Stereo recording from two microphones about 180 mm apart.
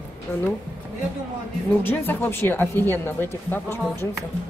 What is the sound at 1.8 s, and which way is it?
A woman's voice, 10° left (ahead or behind).